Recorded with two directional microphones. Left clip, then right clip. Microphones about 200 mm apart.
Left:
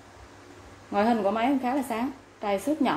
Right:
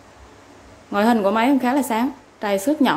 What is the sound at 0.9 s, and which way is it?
A woman's voice, 25° right (ahead or behind).